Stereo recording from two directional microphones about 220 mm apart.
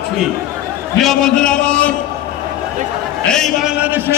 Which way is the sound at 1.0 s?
Centre (ahead or behind).